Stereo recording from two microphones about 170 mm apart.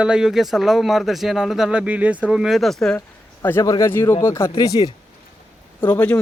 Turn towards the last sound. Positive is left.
turn(degrees=10)  # may be behind; listen again after turning